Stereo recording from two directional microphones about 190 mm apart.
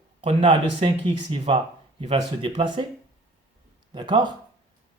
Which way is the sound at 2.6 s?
25° right (ahead or behind).